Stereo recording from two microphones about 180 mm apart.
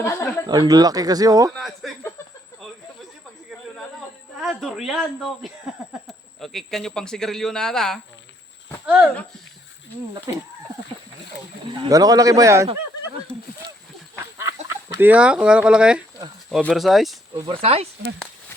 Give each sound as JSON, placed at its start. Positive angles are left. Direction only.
{"t": 0.0, "sound": "speech", "side_deg": 15}
{"t": 0.4, "sound": "speech", "side_deg": -20}
{"t": 1.5, "sound": "chuckle", "side_deg": 0}
{"t": 4.4, "sound": "speech", "side_deg": 0}
{"t": 10.3, "sound": "speech", "side_deg": -20}
{"t": 11.8, "sound": "speech", "side_deg": -20}
{"t": 14.3, "sound": "speech", "side_deg": -15}
{"t": 17.3, "sound": "speech", "side_deg": -30}